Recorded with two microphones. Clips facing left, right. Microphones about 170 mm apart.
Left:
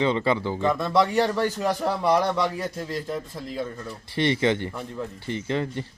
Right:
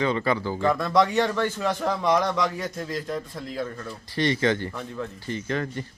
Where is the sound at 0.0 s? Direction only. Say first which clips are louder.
Left 1 dB; 25° left (ahead or behind).